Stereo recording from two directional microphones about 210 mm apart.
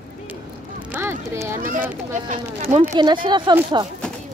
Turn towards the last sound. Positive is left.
turn(degrees=-20)  # may be behind; listen again after turning